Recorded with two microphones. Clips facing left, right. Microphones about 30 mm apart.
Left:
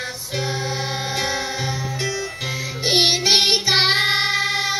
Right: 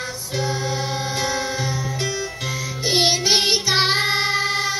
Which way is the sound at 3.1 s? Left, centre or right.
Left.